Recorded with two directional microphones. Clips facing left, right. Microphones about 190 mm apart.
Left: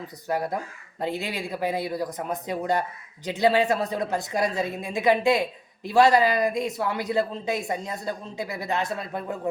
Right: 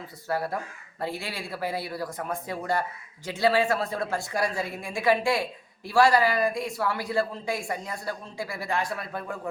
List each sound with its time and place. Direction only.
0.3 s speech: 20° left (ahead or behind)